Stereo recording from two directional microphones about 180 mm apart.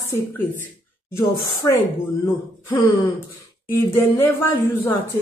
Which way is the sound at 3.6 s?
15° left (ahead or behind).